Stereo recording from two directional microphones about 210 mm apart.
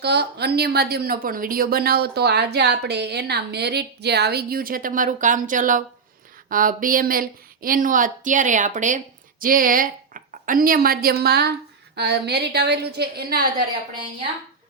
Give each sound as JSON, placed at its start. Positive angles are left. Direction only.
{"t": 0.0, "sound": "a woman's voice", "side_deg": -50}